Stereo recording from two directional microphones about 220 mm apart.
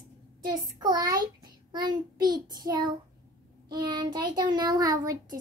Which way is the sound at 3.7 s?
20° right (ahead or behind).